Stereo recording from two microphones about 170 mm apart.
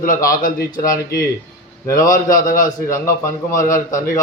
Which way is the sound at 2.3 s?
55° left (ahead or behind).